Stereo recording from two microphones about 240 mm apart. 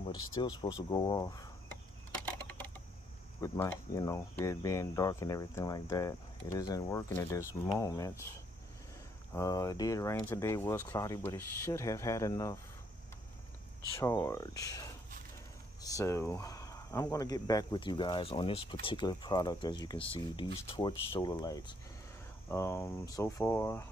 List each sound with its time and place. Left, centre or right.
0.4 s speech: centre
2.1 s a sound: centre
3.3 s speech: centre
9.3 s speech: centre
13.9 s speech: centre